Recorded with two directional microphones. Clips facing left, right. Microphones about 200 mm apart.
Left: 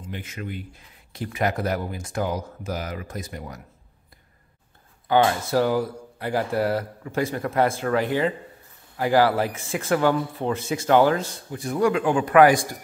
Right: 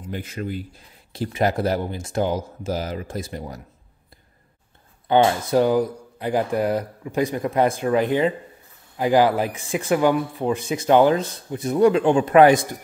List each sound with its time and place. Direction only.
0.1 s speech: 35° right (ahead or behind)
5.0 s speech: 20° right (ahead or behind)